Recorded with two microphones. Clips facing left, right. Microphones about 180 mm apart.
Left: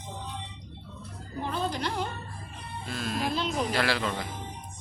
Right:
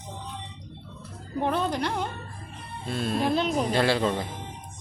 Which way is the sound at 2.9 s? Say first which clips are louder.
Right 5 dB; 30° right (ahead or behind).